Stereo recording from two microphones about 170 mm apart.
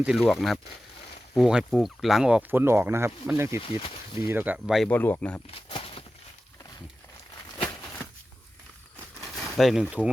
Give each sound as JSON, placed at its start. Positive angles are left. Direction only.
{"t": 0.0, "sound": "speech", "side_deg": 0}
{"t": 3.6, "sound": "speech", "side_deg": 30}
{"t": 4.3, "sound": "speech", "side_deg": -10}
{"t": 4.9, "sound": "speech", "side_deg": 10}
{"t": 5.5, "sound": "a sound", "side_deg": 35}
{"t": 9.2, "sound": "a sound", "side_deg": 0}